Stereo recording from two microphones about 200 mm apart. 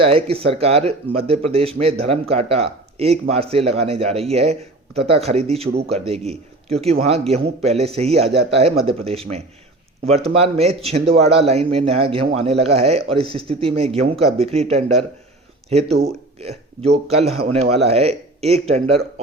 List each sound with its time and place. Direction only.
0.0 s a man's voice: 30° right (ahead or behind)
16.4 s a man's voice: 30° right (ahead or behind)